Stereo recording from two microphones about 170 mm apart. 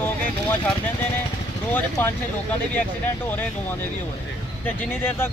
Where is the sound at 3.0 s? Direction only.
10° left (ahead or behind).